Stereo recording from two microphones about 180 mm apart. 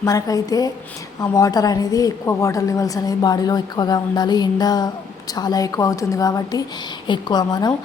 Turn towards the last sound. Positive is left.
turn(degrees=20)  # may be behind; listen again after turning